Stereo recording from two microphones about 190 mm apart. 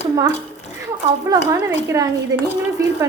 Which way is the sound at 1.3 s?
20° right (ahead or behind).